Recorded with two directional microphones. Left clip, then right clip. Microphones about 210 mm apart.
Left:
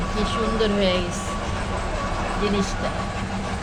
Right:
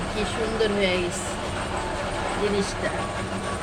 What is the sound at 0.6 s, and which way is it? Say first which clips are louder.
Speech: left 1 dB; 5° right (ahead or behind).